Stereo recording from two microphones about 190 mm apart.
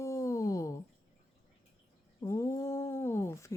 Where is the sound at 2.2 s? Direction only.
15° left (ahead or behind).